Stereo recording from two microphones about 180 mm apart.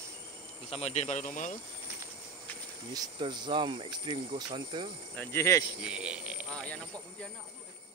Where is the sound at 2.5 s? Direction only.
10° left (ahead or behind).